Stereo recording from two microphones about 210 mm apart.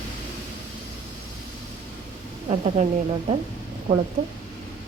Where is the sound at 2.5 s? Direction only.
30° right (ahead or behind).